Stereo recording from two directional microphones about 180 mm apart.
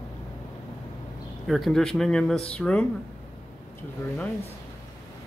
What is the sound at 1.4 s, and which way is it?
Speech, centre (ahead or behind).